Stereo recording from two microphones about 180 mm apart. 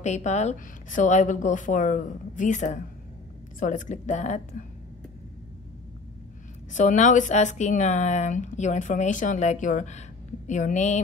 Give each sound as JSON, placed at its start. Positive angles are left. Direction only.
{"t": 0.0, "sound": "a woman's voice", "side_deg": 40}
{"t": 6.7, "sound": "speech", "side_deg": 45}